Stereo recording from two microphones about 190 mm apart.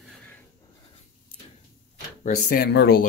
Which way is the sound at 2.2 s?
45° left (ahead or behind).